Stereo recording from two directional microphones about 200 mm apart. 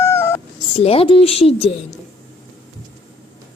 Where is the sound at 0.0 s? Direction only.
15° left (ahead or behind).